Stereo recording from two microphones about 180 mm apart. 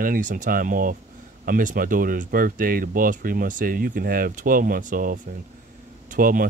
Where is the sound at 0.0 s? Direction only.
50° right (ahead or behind).